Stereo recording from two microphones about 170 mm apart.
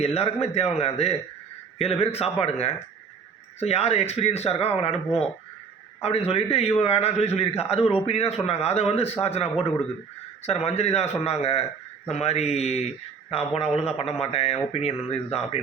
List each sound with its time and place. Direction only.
0.0 s a man's voice: 35° left (ahead or behind)
6.0 s a man's voice: 40° left (ahead or behind)